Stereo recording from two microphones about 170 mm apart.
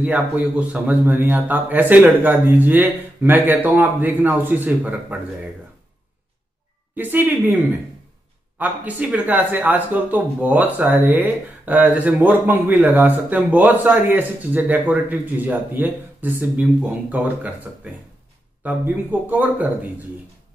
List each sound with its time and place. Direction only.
0.0 s speech: 10° right (ahead or behind)
7.0 s speech: 10° right (ahead or behind)
18.6 s speech: 10° right (ahead or behind)